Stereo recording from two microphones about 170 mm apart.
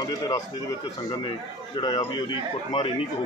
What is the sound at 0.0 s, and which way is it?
A man's voice, 20° left (ahead or behind).